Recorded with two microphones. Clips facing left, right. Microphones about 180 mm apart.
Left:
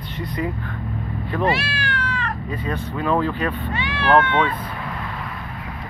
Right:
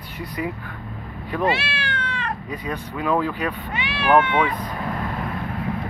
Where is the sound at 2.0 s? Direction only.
20° right (ahead or behind).